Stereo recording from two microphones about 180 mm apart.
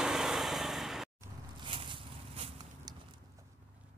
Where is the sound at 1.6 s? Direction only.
30° right (ahead or behind).